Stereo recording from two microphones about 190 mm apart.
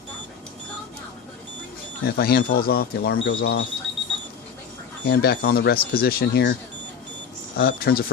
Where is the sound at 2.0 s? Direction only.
55° left (ahead or behind).